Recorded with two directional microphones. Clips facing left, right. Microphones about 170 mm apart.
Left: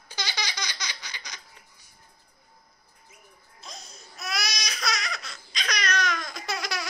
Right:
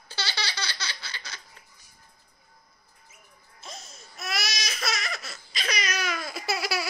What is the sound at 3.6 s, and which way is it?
Baby cry, centre (ahead or behind).